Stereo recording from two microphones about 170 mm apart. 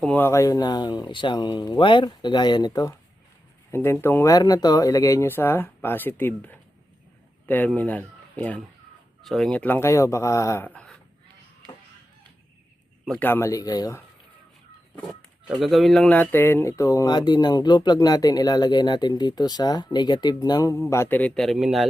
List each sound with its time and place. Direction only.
0.0 s speech: 10° left (ahead or behind)
13.1 s speech: 10° left (ahead or behind)
15.0 s speech: centre (ahead or behind)